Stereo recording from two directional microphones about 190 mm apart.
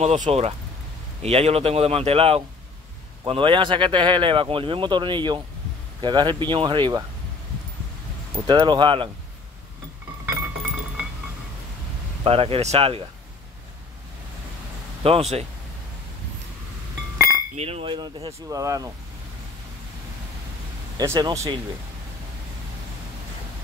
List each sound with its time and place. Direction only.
0.0 s speech: 35° right (ahead or behind); by 7.1 s 20° right (ahead or behind)
8.5 s speech: 25° right (ahead or behind)
12.2 s speech: 30° right (ahead or behind)
15.0 s speech: 35° right (ahead or behind)
17.6 s speech: 30° right (ahead or behind)
21.0 s speech: 15° right (ahead or behind)